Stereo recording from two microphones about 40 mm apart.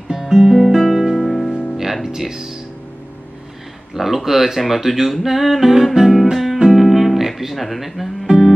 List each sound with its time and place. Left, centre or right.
0.1 s guitar: centre
1.1 s music: centre
1.5 s music: left
2.0 s speech: centre
3.9 s speech: centre
5.9 s music: centre